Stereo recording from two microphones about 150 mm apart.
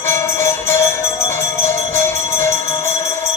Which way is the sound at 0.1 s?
15° left (ahead or behind).